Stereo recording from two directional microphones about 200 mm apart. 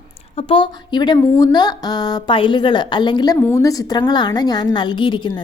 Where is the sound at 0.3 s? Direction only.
25° left (ahead or behind).